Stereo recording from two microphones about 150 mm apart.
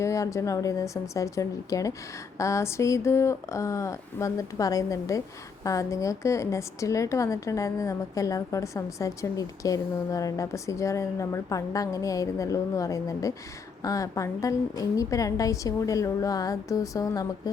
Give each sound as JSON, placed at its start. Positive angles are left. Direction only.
{"t": 0.0, "sound": "a woman's voice", "side_deg": 20}